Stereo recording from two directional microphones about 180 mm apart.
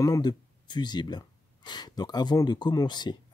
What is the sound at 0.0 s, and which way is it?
Speech, 20° left (ahead or behind).